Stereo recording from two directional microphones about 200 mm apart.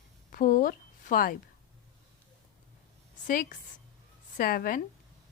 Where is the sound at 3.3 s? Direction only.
45° left (ahead or behind).